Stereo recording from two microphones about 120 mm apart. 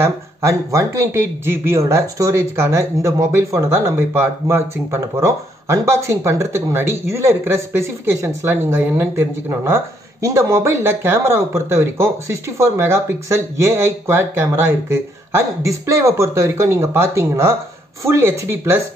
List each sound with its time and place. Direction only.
0.0 s speech: 25° right (ahead or behind)